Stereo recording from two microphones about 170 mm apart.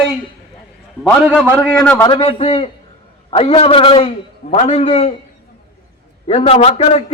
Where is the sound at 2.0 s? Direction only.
30° left (ahead or behind).